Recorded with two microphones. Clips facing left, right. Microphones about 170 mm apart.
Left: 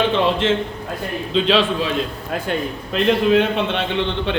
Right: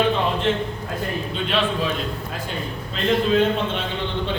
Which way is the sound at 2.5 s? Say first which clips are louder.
Left 7 dB; 70° left (ahead or behind).